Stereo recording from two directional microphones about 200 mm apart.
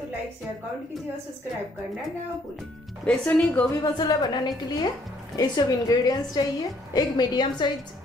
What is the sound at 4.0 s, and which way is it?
A woman's voice, 20° left (ahead or behind).